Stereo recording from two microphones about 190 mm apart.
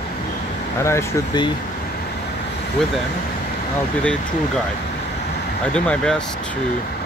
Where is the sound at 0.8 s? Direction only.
20° left (ahead or behind).